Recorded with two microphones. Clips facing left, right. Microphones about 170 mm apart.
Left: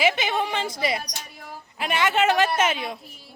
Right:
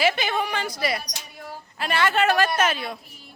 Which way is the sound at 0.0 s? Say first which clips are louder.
Even; 15° left (ahead or behind).